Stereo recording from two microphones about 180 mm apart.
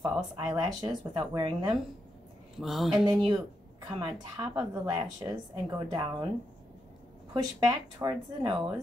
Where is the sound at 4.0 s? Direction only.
20° right (ahead or behind).